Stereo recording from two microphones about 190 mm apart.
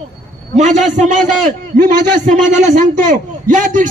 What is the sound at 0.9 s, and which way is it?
A man's voice, 40° right (ahead or behind).